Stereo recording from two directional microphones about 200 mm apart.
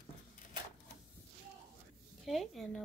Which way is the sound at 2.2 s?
Centre (ahead or behind).